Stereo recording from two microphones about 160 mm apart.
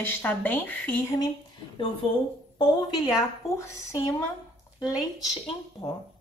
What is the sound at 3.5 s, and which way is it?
Speech, 15° left (ahead or behind).